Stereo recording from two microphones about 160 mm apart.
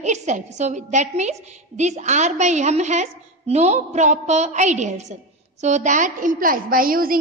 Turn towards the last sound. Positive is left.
turn(degrees=-60)  # may be behind; listen again after turning